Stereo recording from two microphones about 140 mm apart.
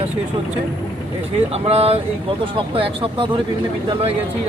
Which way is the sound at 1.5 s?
45° right (ahead or behind).